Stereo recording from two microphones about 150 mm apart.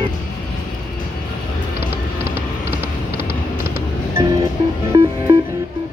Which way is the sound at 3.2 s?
90° left.